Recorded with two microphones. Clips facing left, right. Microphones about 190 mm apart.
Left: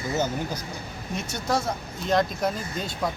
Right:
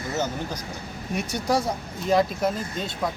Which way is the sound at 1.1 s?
15° right (ahead or behind).